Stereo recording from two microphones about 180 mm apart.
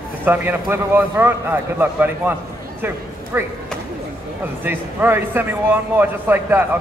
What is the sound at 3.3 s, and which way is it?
Speech, 10° right (ahead or behind).